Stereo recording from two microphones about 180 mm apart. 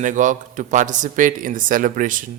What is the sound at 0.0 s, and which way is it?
Speech, 45° right (ahead or behind).